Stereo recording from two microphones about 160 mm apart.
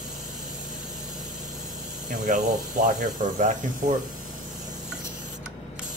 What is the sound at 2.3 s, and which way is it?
Speech, 55° right (ahead or behind).